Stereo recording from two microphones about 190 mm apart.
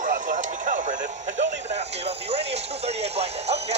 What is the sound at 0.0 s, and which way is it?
Radio, 45° right (ahead or behind).